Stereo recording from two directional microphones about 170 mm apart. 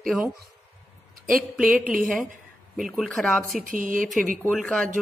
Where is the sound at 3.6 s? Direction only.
50° right (ahead or behind).